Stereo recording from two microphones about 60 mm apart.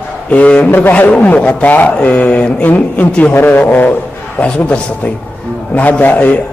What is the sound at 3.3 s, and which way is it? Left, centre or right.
Speech, left.